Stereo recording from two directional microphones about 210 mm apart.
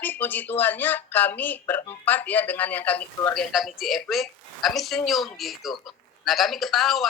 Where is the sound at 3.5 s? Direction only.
Centre (ahead or behind).